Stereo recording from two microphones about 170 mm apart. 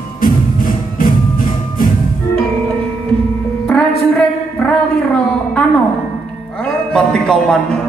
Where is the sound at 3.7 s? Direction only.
5° left (ahead or behind).